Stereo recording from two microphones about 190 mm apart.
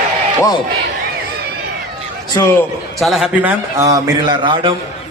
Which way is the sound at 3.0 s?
Centre (ahead or behind).